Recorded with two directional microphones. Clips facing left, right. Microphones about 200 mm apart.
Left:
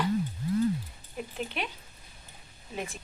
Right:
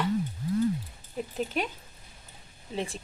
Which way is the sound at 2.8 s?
30° right (ahead or behind).